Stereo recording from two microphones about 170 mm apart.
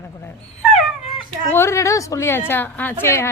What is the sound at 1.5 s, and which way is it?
A woman's voice, 15° left (ahead or behind).